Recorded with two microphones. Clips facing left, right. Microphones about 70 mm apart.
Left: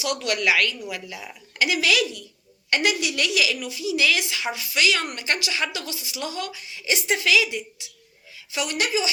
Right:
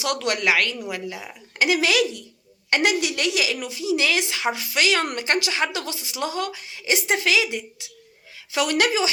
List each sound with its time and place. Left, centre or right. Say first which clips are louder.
0.0 s a woman's voice: right 2 dB; right
0.3 s a woman's voice: even; right
8.5 s speech: right 4 dB; right